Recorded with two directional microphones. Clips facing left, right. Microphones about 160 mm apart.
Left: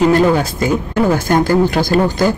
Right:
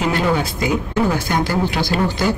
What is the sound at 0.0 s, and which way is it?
Speech, 45° left (ahead or behind).